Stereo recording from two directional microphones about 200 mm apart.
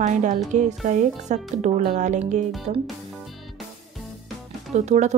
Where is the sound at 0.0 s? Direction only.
35° right (ahead or behind).